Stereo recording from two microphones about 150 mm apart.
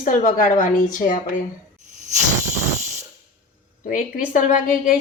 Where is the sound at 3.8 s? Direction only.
65° left (ahead or behind).